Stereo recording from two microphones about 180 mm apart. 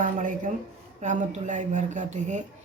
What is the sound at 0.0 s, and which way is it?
A woman's voice, 50° right (ahead or behind).